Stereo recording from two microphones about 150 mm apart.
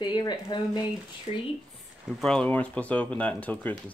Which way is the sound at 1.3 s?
40° left (ahead or behind).